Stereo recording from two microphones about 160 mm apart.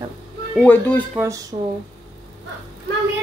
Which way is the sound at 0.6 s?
10° left (ahead or behind).